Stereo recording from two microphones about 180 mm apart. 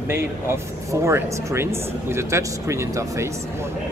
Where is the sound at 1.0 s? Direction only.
15° right (ahead or behind).